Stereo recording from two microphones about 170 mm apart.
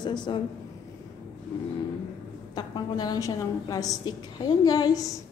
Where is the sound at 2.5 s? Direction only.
25° left (ahead or behind).